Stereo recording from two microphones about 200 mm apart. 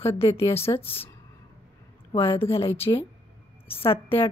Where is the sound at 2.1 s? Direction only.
25° left (ahead or behind).